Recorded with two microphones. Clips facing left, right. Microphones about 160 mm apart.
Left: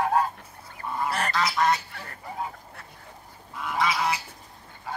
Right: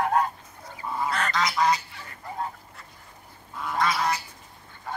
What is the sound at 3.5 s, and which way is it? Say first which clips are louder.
Duck: even; 5° left (ahead or behind).